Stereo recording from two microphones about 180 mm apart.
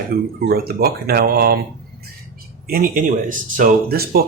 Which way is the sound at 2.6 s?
55° right (ahead or behind).